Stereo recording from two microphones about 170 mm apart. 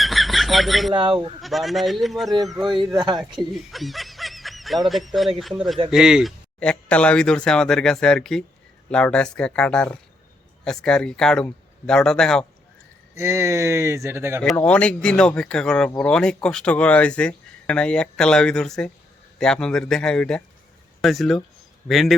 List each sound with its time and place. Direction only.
0.0 s a sound: centre (ahead or behind)
0.9 s speech: 30° right (ahead or behind)
1.4 s speech: centre (ahead or behind)
2.7 s speech: 25° right (ahead or behind)
3.5 s snicker: centre (ahead or behind)
5.9 s speech: centre (ahead or behind)
13.1 s speech: 15° right (ahead or behind)
14.4 s speech: 5° left (ahead or behind)